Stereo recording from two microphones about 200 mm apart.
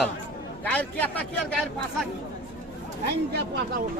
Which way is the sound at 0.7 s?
5° left (ahead or behind).